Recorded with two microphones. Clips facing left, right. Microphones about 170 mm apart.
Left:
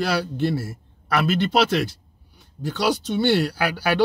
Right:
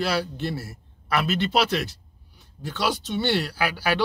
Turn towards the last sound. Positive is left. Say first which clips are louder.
# left 4 dB
turn(degrees=45)  # may be behind; listen again after turning